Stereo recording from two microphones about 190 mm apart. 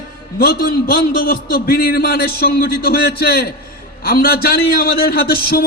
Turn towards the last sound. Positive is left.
turn(degrees=55)  # may be behind; listen again after turning